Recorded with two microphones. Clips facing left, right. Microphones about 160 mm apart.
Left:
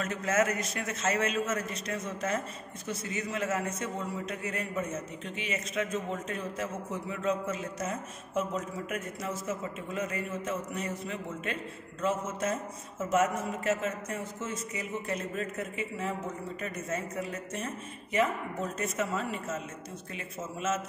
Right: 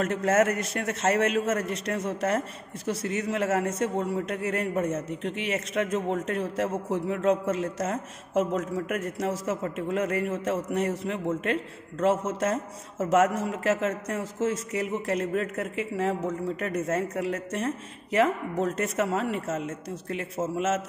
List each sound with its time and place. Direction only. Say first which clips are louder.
0.0 s a man's voice: right 6 dB; 65° right (ahead or behind)